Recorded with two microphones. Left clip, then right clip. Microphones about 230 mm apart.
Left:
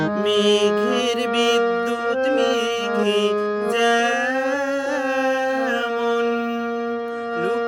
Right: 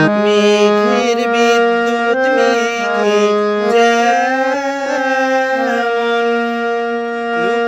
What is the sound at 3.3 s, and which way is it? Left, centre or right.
Music, right.